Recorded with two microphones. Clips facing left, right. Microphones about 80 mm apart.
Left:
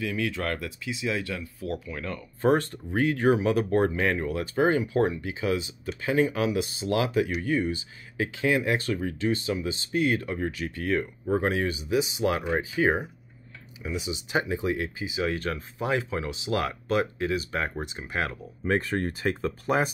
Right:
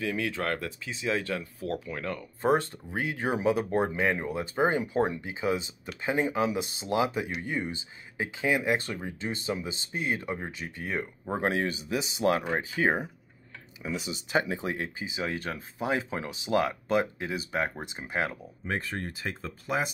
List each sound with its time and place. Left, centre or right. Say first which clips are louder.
0.0 s speech: left 1 dB; right
1.9 s speech: even; right
11.4 s speech: left 1 dB; right
14.1 s speech: even; right
18.9 s speech: left 7 dB; left